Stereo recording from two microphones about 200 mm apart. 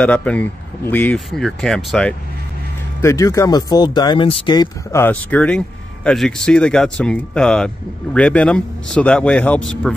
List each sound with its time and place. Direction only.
0.0 s speech: 5° left (ahead or behind)
3.0 s speech: 15° left (ahead or behind)